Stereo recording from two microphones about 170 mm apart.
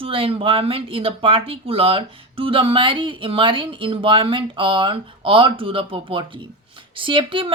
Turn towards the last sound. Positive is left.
turn(degrees=-30)  # may be behind; listen again after turning